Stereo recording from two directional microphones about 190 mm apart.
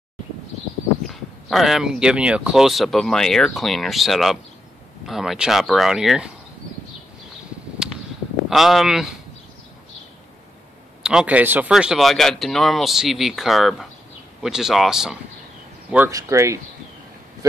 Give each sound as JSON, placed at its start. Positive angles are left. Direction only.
{"t": 1.0, "sound": "speech", "side_deg": 0}
{"t": 7.8, "sound": "a sound", "side_deg": -5}
{"t": 8.5, "sound": "speech", "side_deg": 0}
{"t": 11.0, "sound": "speech", "side_deg": -5}
{"t": 16.1, "sound": "speech", "side_deg": -15}